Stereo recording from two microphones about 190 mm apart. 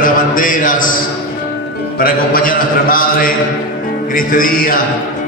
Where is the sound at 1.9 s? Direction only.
50° left (ahead or behind).